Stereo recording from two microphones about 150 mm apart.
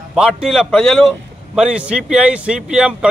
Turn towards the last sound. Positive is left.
turn(degrees=-5)  # may be behind; listen again after turning